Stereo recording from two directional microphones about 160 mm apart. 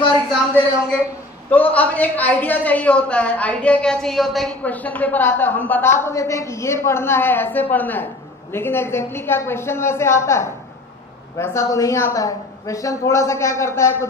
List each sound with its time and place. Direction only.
1.5 s a man's voice: 10° left (ahead or behind)